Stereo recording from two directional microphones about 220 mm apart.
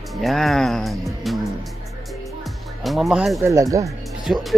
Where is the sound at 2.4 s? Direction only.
Centre (ahead or behind).